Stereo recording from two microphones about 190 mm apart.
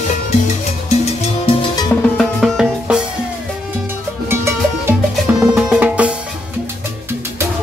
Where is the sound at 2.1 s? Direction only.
Centre (ahead or behind).